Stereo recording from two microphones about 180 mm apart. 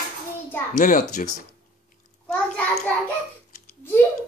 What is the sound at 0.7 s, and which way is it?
Speech, 45° left (ahead or behind).